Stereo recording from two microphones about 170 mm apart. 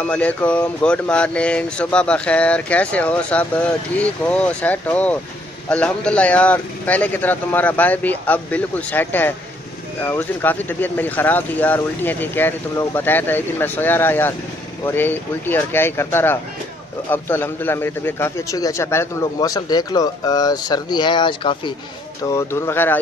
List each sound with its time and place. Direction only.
0.1 s a man's voice: 10° left (ahead or behind); by 21.7 s 30° left (ahead or behind)
22.2 s speech: 15° left (ahead or behind)